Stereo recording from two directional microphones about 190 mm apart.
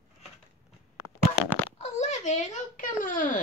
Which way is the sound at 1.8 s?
35° left (ahead or behind).